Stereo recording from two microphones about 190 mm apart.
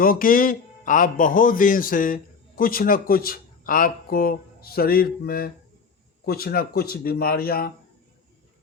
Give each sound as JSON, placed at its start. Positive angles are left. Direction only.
{"t": 0.0, "sound": "a man's voice", "side_deg": 50}